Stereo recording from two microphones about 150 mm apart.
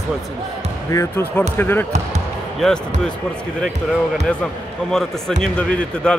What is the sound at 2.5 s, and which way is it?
Speech, centre (ahead or behind).